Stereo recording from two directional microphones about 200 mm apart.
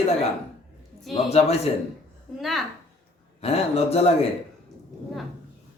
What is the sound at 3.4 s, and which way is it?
Speech, 30° left (ahead or behind).